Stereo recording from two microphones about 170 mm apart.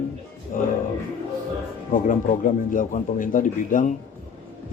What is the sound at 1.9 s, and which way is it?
Speech, 50° left (ahead or behind).